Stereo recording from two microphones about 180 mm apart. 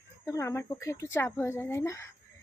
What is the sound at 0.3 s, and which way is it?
A woman's voice, 15° left (ahead or behind).